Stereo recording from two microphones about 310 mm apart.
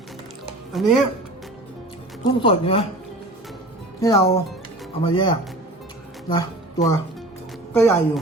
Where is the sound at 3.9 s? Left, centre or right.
Centre.